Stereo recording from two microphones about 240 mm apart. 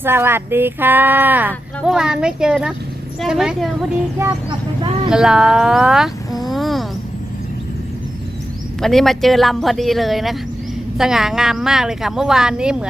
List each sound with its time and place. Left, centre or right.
0.0 s a woman's voice: centre
4.2 s speech: centre
5.1 s speech: centre
8.8 s a woman's voice: centre